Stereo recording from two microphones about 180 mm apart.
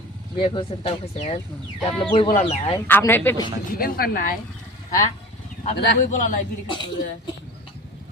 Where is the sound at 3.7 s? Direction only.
55° left (ahead or behind).